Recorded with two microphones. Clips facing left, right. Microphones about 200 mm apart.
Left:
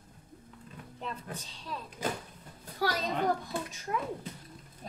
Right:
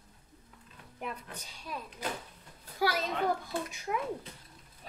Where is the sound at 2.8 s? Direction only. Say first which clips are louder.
Right 1 dB; 10° right (ahead or behind).